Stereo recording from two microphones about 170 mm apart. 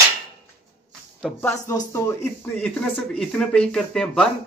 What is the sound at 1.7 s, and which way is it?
Speech, 15° left (ahead or behind).